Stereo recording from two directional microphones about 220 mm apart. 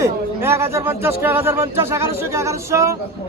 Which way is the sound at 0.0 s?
10° right (ahead or behind).